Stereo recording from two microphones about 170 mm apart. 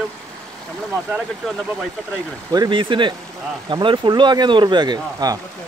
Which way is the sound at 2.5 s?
25° right (ahead or behind).